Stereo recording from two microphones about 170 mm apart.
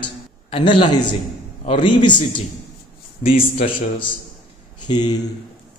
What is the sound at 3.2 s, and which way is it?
A man's voice, 35° left (ahead or behind).